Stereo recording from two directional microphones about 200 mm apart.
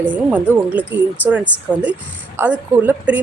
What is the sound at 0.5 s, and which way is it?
A woman's voice, 10° right (ahead or behind).